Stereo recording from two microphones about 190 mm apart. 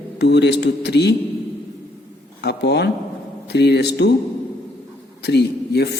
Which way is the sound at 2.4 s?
60° left (ahead or behind).